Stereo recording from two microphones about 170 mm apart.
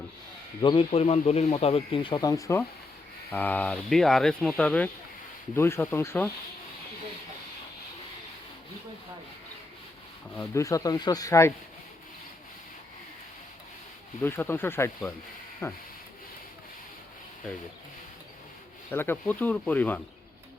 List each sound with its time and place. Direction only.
0.6 s speech: 30° left (ahead or behind); by 6.3 s 10° left (ahead or behind)
10.3 s speech: 15° left (ahead or behind)
14.2 s speech: 15° left (ahead or behind)
18.9 s speech: 10° left (ahead or behind)